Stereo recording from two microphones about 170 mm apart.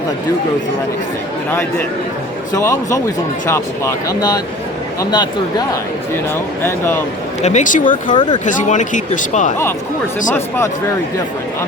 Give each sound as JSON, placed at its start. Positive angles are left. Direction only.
{"t": 2.5, "sound": "speech", "side_deg": 20}
{"t": 4.9, "sound": "speech", "side_deg": 25}
{"t": 7.4, "sound": "speech", "side_deg": 45}
{"t": 8.1, "sound": "speech", "side_deg": 30}
{"t": 8.4, "sound": "speech", "side_deg": 50}